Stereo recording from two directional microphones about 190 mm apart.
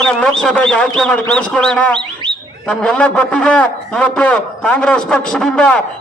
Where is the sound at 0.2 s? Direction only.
5° left (ahead or behind).